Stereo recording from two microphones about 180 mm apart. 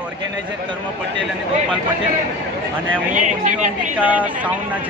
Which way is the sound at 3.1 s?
45° right (ahead or behind).